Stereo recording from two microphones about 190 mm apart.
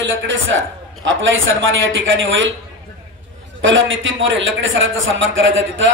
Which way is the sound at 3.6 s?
90° right.